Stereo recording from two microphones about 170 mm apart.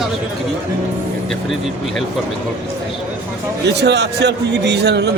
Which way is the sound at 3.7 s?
90° right.